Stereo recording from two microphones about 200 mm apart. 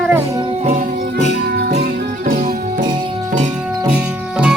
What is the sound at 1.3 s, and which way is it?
Music, 55° right (ahead or behind).